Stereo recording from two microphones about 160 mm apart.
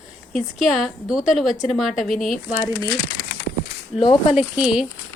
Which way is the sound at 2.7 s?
15° left (ahead or behind).